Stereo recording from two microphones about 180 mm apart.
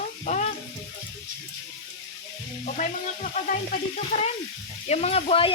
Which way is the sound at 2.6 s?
45° left (ahead or behind).